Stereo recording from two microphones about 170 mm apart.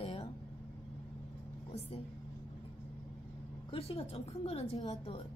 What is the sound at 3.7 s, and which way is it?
A woman's voice, 35° left (ahead or behind).